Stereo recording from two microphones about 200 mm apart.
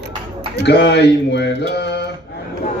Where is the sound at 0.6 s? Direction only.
60° left (ahead or behind).